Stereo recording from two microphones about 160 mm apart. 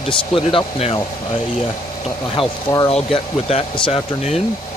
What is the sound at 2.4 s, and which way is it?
Speech, 30° left (ahead or behind).